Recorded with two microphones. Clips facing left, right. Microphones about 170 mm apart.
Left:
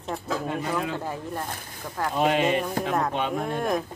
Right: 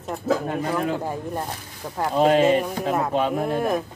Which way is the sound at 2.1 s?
40° right (ahead or behind).